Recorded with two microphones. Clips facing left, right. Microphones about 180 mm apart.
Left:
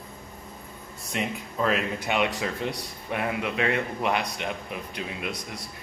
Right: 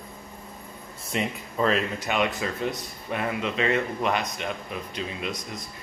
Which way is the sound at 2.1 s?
15° left (ahead or behind).